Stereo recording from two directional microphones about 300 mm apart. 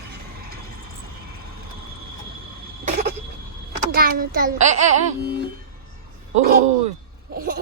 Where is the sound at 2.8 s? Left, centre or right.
Right.